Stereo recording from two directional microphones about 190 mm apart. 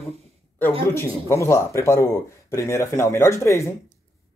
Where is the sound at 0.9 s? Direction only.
15° left (ahead or behind).